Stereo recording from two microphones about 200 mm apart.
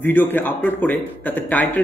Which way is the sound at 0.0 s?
10° left (ahead or behind).